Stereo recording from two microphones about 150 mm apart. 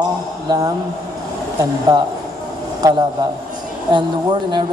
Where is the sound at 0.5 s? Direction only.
25° right (ahead or behind).